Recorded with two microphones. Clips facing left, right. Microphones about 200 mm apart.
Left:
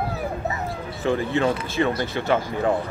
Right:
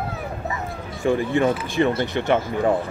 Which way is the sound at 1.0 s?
15° right (ahead or behind).